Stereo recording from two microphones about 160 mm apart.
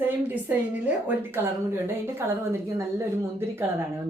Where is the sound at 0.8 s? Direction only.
10° right (ahead or behind).